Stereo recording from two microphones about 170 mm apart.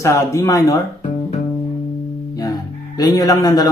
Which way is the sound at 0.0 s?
15° left (ahead or behind).